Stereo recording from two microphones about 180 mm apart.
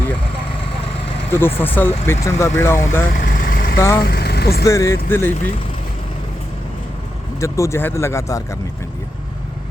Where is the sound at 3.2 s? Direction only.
50° left (ahead or behind).